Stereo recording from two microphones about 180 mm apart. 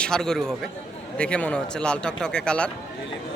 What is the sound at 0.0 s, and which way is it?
A man's voice, 5° left (ahead or behind).